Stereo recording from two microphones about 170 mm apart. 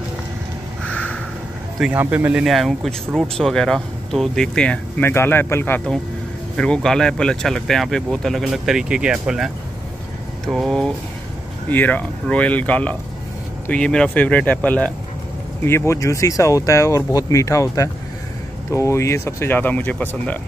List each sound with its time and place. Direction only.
1.8 s speech: 10° right (ahead or behind); by 20.3 s 10° left (ahead or behind)